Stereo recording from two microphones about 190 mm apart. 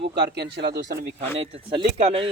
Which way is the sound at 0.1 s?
60° right (ahead or behind).